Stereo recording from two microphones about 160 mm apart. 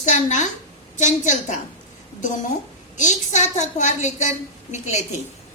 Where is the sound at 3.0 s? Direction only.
50° left (ahead or behind).